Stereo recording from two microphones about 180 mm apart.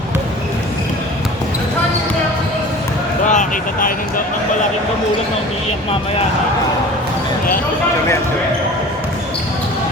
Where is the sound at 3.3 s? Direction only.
45° left (ahead or behind).